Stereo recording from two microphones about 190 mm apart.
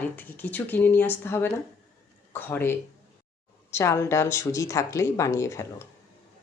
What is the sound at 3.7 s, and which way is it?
Speech, 15° left (ahead or behind).